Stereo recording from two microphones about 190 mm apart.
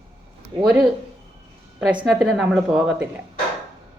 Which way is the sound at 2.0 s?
5° right (ahead or behind).